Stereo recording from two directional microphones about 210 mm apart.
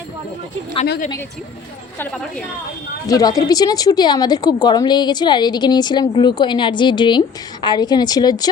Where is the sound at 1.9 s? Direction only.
10° left (ahead or behind).